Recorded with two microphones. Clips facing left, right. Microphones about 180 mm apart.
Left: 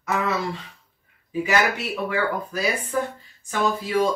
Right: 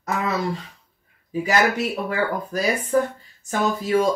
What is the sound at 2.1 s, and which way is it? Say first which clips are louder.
Speech: right 1 dB; 40° right (ahead or behind).